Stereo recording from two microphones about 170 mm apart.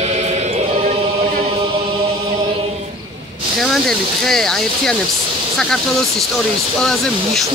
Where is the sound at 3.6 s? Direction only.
5° left (ahead or behind).